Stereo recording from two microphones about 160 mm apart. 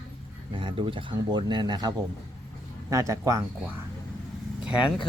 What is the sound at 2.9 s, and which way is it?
Speech, 20° right (ahead or behind).